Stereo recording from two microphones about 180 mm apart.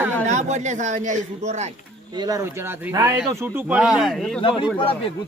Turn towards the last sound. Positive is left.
turn(degrees=30)  # may be behind; listen again after turning